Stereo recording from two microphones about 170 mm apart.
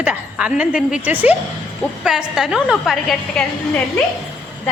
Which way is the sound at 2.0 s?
5° right (ahead or behind).